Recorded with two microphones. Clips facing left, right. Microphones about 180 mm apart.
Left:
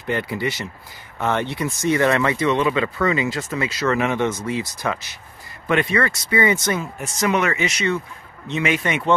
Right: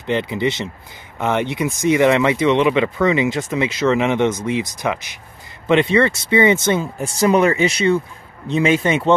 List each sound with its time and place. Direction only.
0.0 s speech: 20° right (ahead or behind)